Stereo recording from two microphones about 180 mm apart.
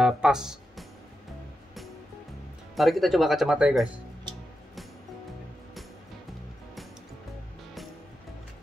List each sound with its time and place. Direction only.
0.0 s music: 5° right (ahead or behind)
2.7 s speech: centre (ahead or behind)